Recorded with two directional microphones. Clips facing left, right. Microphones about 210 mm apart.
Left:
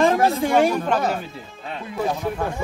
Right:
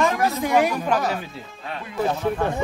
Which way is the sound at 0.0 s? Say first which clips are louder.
Left 4 dB; 30° left (ahead or behind).